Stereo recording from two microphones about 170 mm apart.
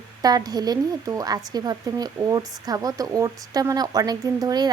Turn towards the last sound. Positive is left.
turn(degrees=-25)  # may be behind; listen again after turning